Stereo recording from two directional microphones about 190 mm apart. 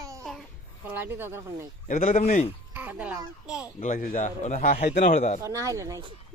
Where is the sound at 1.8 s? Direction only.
40° left (ahead or behind).